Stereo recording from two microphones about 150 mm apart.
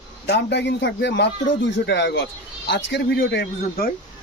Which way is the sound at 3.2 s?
90° left.